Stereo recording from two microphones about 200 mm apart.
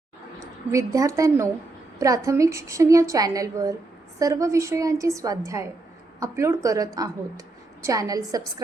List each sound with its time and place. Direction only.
0.7 s a woman's voice: 15° right (ahead or behind)